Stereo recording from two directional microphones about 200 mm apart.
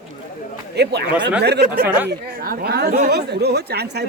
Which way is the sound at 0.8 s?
55° right (ahead or behind).